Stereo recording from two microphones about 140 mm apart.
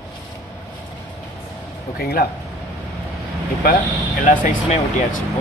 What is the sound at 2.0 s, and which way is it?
Speech, 90° left.